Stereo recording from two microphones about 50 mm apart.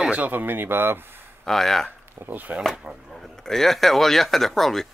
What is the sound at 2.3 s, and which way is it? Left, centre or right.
Speech, right.